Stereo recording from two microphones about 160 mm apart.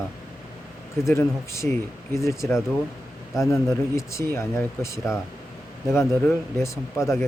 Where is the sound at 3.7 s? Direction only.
15° left (ahead or behind).